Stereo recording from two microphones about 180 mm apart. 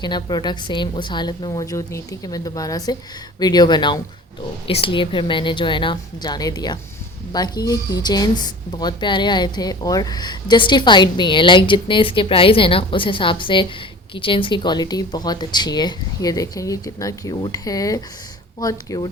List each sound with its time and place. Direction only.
0.0 s a woman's voice: 25° left (ahead or behind)